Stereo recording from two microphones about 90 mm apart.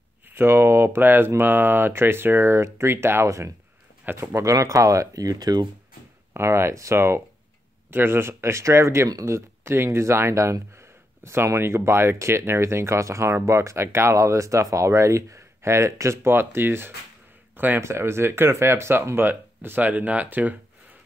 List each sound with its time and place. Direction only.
0.3 s speech: 25° right (ahead or behind); by 5.7 s 45° right (ahead or behind)
6.3 s speech: 30° right (ahead or behind)